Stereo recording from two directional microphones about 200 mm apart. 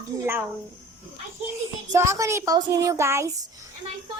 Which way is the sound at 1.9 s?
15° right (ahead or behind).